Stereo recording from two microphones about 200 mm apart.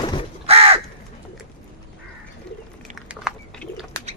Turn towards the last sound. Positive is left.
turn(degrees=0)  # may be behind; listen again after turning